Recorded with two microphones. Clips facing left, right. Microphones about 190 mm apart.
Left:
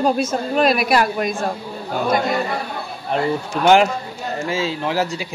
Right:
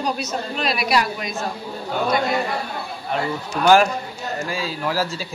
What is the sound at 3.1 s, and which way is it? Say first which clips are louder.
Speech: left 4 dB; 30° left (ahead or behind).